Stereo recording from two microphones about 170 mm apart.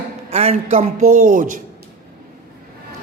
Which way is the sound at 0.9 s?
50° right (ahead or behind).